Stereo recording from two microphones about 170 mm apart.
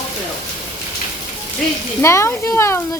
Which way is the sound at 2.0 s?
15° left (ahead or behind).